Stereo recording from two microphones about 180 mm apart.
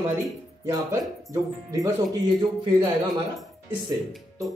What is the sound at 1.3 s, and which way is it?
Speech, 20° right (ahead or behind).